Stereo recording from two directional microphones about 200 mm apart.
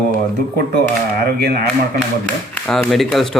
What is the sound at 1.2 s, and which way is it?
Speech, 55° right (ahead or behind).